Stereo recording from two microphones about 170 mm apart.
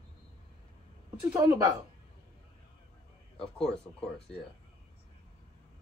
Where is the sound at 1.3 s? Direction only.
20° right (ahead or behind).